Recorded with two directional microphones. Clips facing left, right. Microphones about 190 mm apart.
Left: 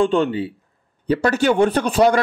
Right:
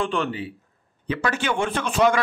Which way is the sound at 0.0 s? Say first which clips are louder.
Left 8 dB; 25° left (ahead or behind).